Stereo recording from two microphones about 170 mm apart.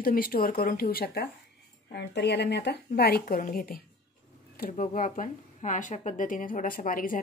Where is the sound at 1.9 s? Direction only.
80° left; by 3.7 s 55° left (ahead or behind).